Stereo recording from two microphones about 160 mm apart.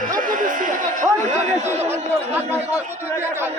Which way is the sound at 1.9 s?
15° right (ahead or behind).